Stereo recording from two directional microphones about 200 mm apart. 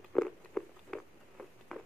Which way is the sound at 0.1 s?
5° left (ahead or behind).